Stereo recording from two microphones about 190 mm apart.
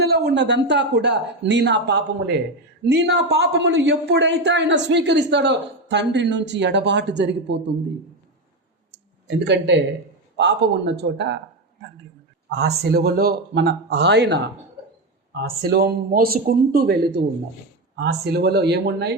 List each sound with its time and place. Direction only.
0.0 s speech: 60° right (ahead or behind)
9.2 s a man's voice: 65° right (ahead or behind)